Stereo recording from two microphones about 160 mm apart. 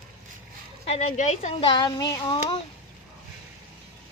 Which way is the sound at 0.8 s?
45° left (ahead or behind).